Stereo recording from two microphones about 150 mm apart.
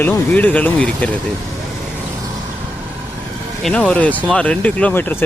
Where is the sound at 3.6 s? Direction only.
5° left (ahead or behind).